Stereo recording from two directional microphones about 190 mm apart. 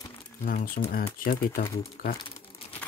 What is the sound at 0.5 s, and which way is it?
Speech, 50° left (ahead or behind).